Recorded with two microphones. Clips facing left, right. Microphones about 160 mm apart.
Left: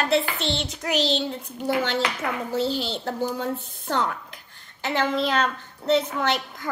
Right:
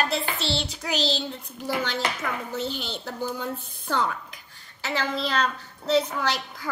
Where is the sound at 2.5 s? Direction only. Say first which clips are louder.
Left 6 dB; 30° left (ahead or behind).